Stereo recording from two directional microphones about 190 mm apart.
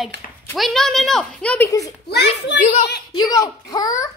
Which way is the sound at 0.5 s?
Centre (ahead or behind).